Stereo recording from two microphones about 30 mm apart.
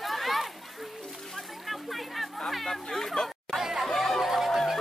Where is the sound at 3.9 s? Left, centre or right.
Centre.